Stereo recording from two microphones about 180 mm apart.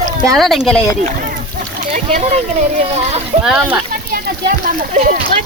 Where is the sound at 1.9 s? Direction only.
40° right (ahead or behind).